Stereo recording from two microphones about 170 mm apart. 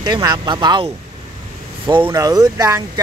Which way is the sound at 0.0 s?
25° right (ahead or behind).